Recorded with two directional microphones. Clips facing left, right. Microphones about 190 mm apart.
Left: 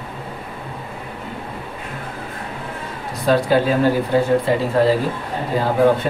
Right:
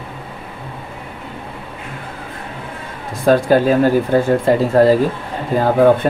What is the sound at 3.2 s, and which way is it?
Speech, 50° right (ahead or behind).